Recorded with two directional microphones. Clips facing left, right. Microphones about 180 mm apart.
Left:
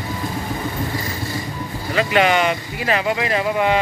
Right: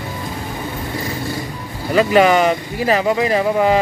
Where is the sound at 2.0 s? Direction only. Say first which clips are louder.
Right 5 dB; 40° right (ahead or behind).